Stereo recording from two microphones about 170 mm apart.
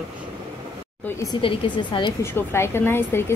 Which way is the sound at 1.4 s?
30° left (ahead or behind).